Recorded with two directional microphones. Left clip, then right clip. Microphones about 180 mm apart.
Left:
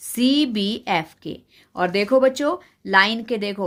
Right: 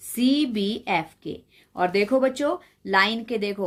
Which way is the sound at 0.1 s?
35° left (ahead or behind).